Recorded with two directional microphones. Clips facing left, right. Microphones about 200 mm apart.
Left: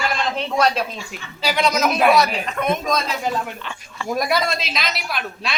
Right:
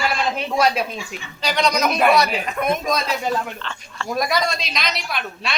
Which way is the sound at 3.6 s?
10° left (ahead or behind).